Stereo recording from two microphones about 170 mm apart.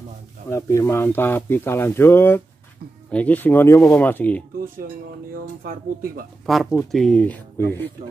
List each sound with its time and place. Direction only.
0.5 s speech: 20° left (ahead or behind)
5.3 s speech: 60° right (ahead or behind)
6.4 s speech: centre (ahead or behind)